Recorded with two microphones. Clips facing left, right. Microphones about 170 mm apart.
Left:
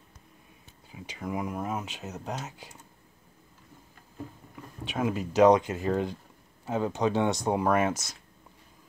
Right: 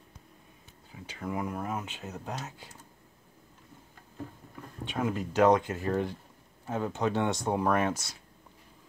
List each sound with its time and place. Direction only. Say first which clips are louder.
0.9 s speech: left 1 dB; 15° left (ahead or behind)
4.8 s speech: left 2 dB; 10° left (ahead or behind)
7.9 s speech: left 1 dB; 45° left (ahead or behind)